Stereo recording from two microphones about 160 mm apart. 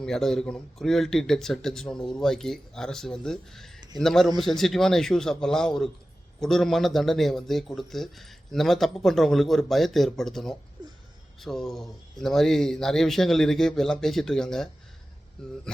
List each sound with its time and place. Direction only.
0.0 s speech: 5° left (ahead or behind)